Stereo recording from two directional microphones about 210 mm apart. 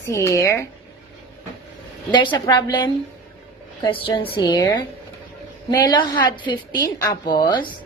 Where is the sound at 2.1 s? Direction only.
20° left (ahead or behind).